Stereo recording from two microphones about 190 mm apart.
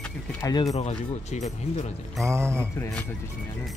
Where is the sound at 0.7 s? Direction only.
35° left (ahead or behind).